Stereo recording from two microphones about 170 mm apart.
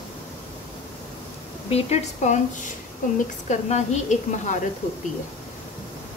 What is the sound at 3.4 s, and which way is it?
A woman's voice, 40° left (ahead or behind).